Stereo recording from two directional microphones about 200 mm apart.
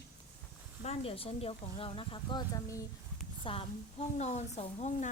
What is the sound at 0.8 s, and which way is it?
A woman's voice, 30° left (ahead or behind).